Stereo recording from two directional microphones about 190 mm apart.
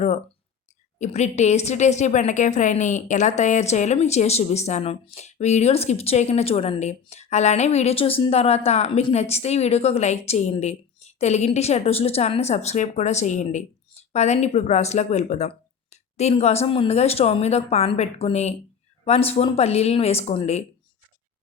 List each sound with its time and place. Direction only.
0.9 s a woman's voice: 40° left (ahead or behind)